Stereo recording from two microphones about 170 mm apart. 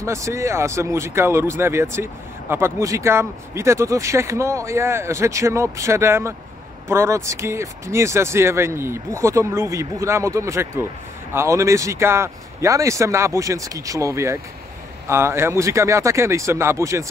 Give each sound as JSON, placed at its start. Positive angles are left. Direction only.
{"t": 0.0, "sound": "speech", "side_deg": -15}